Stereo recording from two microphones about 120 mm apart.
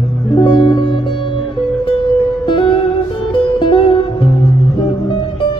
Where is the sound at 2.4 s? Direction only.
45° left (ahead or behind).